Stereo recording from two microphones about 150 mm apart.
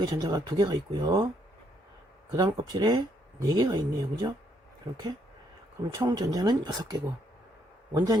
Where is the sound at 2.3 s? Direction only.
30° right (ahead or behind).